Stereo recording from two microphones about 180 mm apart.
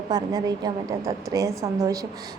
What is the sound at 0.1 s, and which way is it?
A woman's voice, 20° right (ahead or behind).